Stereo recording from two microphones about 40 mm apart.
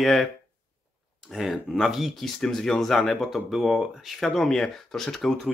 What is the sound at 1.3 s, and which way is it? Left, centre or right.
Speech, centre.